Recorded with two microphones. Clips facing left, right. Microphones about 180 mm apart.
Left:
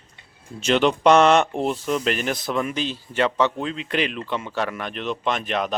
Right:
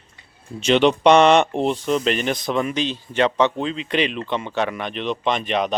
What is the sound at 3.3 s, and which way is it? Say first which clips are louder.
Speech: right 2 dB; 25° right (ahead or behind).